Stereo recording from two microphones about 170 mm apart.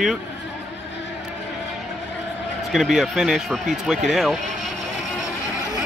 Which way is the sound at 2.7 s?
Centre (ahead or behind).